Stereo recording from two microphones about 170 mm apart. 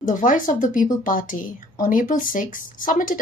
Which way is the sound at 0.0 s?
50° left (ahead or behind).